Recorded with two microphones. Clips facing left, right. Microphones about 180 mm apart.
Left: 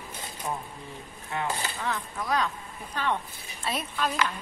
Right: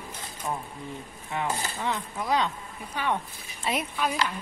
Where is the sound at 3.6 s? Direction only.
20° right (ahead or behind).